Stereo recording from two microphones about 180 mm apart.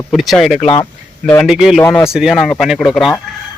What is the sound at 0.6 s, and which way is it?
Speech, 30° left (ahead or behind).